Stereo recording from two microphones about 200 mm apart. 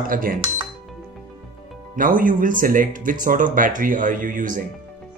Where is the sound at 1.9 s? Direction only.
45° right (ahead or behind).